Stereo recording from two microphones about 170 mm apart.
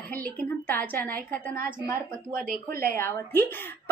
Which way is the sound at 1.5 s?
55° right (ahead or behind).